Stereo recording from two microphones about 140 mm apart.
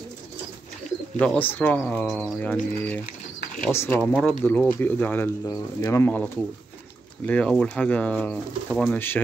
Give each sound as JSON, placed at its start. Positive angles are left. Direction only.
{"t": 1.1, "sound": "speech", "side_deg": 10}